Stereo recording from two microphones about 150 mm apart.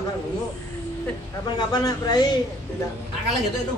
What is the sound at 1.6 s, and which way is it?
Speech, 25° left (ahead or behind).